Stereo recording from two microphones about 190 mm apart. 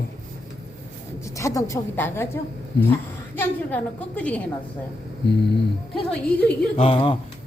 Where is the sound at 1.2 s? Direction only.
15° left (ahead or behind).